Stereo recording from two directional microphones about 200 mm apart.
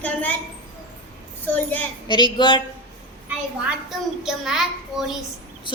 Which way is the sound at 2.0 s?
25° left (ahead or behind).